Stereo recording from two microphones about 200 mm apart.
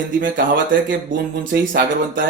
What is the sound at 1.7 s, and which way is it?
Speech, 45° right (ahead or behind).